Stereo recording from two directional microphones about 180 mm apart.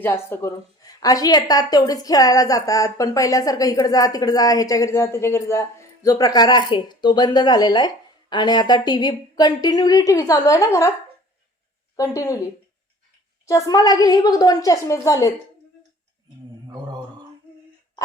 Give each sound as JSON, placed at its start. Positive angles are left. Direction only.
{"t": 0.0, "sound": "a woman's voice", "side_deg": 10}
{"t": 11.9, "sound": "a woman's voice", "side_deg": 15}
{"t": 13.5, "sound": "a woman's voice", "side_deg": 20}